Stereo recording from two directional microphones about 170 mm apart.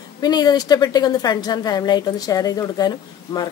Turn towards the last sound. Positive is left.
turn(degrees=25)  # may be behind; listen again after turning